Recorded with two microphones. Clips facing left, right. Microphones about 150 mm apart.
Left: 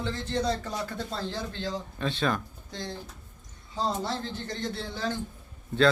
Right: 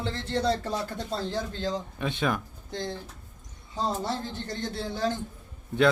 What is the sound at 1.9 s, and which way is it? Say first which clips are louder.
Speech: left 3 dB; 15° right (ahead or behind).